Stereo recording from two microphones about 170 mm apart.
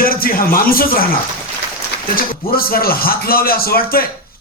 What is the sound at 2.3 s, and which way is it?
A man's voice, 60° left (ahead or behind).